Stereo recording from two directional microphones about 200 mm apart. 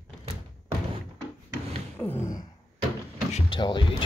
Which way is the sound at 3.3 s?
25° left (ahead or behind).